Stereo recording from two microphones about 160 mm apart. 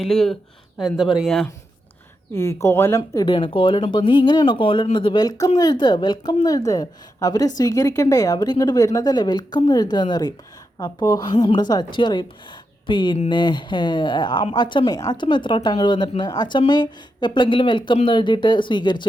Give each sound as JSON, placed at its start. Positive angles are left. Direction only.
{"t": 0.0, "sound": "speech", "side_deg": 0}
{"t": 2.3, "sound": "speech", "side_deg": 15}
{"t": 3.2, "sound": "speech", "side_deg": 30}